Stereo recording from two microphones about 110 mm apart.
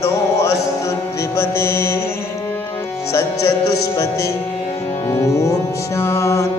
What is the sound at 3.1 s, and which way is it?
Music, 30° left (ahead or behind).